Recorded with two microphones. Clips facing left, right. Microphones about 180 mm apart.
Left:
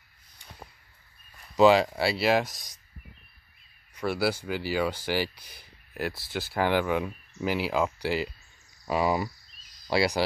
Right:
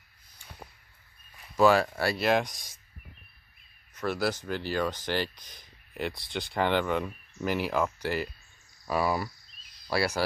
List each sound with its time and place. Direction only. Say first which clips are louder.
1.6 s speech: left 3 dB; 15° left (ahead or behind)
3.9 s speech: left 2 dB; 10° left (ahead or behind)